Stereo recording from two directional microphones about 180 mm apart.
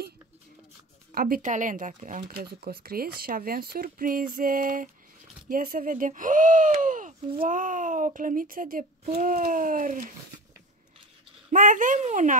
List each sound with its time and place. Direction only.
1.1 s speech: 50° right (ahead or behind)
9.0 s speech: 35° right (ahead or behind)
9.3 s speech: 50° right (ahead or behind)
11.5 s speech: 45° right (ahead or behind)